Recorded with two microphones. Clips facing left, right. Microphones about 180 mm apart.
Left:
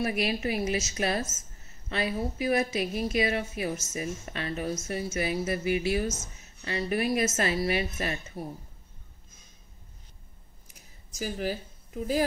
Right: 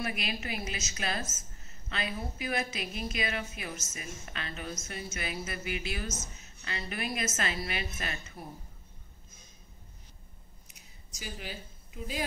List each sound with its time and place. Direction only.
0.0 s a woman's voice: 30° left (ahead or behind)
2.4 s a woman's voice: 35° left (ahead or behind)
11.1 s speech: 45° left (ahead or behind)